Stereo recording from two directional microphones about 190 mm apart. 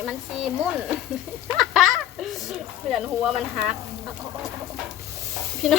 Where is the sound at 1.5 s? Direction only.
Centre (ahead or behind).